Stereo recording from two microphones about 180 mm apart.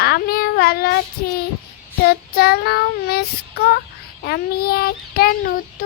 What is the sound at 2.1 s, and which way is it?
Child singing, 60° left (ahead or behind).